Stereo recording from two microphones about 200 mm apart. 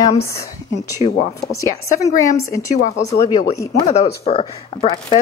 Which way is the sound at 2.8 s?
35° left (ahead or behind).